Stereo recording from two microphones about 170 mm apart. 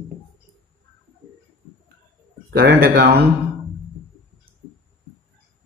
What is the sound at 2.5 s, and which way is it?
Speech, 60° right (ahead or behind).